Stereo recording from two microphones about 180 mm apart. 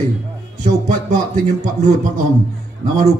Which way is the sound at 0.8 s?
40° right (ahead or behind).